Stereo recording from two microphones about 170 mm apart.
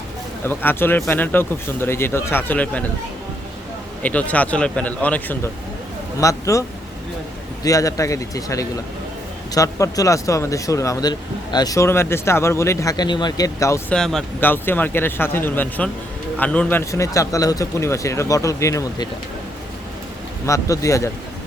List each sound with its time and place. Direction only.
0.4 s speech: 10° left (ahead or behind)
4.0 s speech: 10° left (ahead or behind)
13.9 s speech: centre (ahead or behind); by 19.0 s 20° left (ahead or behind)
20.5 s speech: 20° left (ahead or behind)